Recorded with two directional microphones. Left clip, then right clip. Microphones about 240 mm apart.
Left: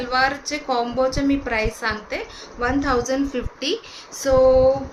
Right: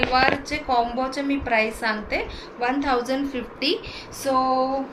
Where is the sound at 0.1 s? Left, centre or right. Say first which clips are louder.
Even; left.